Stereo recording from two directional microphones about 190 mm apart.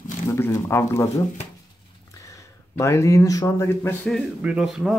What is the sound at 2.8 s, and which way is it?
Speech, 15° left (ahead or behind).